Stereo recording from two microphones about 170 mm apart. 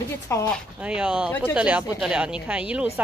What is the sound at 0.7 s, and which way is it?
Speech, 5° right (ahead or behind).